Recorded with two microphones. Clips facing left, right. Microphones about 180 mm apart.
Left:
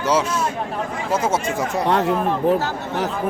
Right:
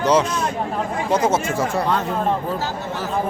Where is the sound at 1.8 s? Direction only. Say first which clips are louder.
Left 2 dB; 70° left (ahead or behind).